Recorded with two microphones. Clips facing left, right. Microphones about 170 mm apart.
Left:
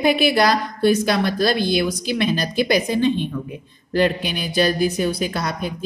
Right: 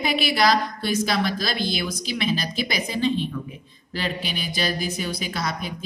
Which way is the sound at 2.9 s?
55° left (ahead or behind).